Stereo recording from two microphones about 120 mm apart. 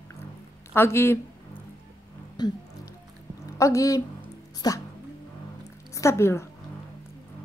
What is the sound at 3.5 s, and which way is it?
A woman's voice, 25° left (ahead or behind).